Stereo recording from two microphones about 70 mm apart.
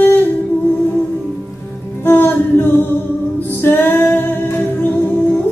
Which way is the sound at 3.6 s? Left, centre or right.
Left.